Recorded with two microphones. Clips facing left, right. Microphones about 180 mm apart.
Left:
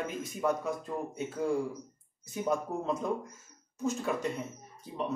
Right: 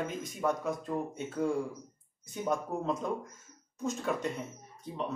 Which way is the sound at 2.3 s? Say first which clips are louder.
Left 1 dB; centre (ahead or behind).